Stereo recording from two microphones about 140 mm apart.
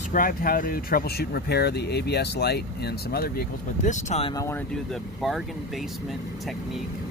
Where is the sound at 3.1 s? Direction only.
90° left; by 4.2 s 60° left (ahead or behind).